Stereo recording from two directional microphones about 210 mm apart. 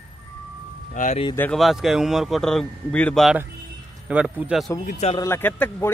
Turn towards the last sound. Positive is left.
turn(degrees=10)  # may be behind; listen again after turning